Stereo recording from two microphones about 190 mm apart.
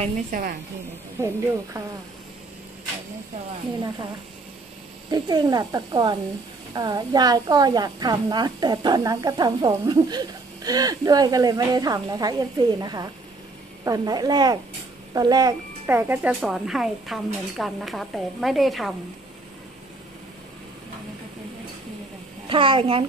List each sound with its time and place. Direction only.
0.0 s a woman's voice: 45° right (ahead or behind)
5.1 s a woman's voice: 20° right (ahead or behind); by 18.9 s centre (ahead or behind)
22.5 s a woman's voice: 30° right (ahead or behind)